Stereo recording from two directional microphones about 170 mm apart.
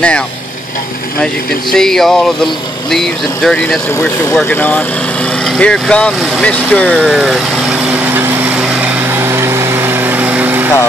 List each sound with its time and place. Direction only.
1.2 s speech: 5° left (ahead or behind)
7.1 s light engine: centre (ahead or behind)